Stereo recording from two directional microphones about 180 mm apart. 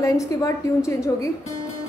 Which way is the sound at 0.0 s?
15° left (ahead or behind).